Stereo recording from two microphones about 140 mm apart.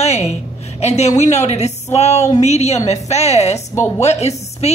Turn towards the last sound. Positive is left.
turn(degrees=50)  # may be behind; listen again after turning